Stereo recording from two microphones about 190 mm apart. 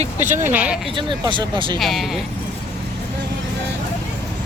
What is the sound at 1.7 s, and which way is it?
Speech, centre (ahead or behind).